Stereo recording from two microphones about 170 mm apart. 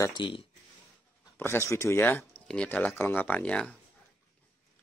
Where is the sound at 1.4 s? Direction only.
15° left (ahead or behind).